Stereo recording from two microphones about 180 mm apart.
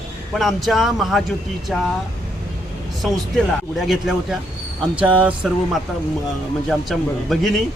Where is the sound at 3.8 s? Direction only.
Centre (ahead or behind).